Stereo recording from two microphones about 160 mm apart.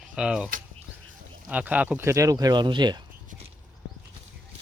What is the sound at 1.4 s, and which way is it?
Speech, 10° right (ahead or behind).